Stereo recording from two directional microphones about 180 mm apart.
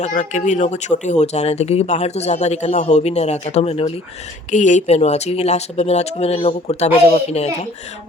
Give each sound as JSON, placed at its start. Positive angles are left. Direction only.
{"t": 0.0, "sound": "speech", "side_deg": 40}